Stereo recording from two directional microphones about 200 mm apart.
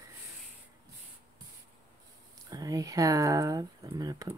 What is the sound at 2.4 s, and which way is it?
Speech, 15° right (ahead or behind).